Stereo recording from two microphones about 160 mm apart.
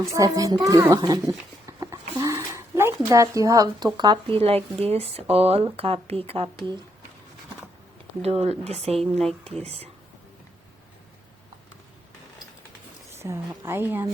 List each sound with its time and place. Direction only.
0.0 s a child's voice: 20° right (ahead or behind); by 6.5 s 35° right (ahead or behind)
8.2 s speech: 40° right (ahead or behind)
13.1 s a woman's voice: 15° right (ahead or behind)